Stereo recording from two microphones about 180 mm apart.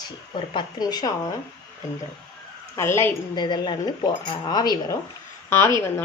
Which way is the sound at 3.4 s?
25° left (ahead or behind).